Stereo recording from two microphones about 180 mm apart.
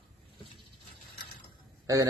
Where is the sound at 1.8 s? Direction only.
20° right (ahead or behind).